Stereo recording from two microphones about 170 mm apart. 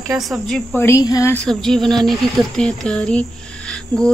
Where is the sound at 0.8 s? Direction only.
15° left (ahead or behind).